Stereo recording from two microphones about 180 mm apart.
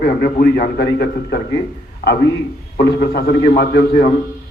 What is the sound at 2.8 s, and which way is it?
A man's voice, 60° left (ahead or behind).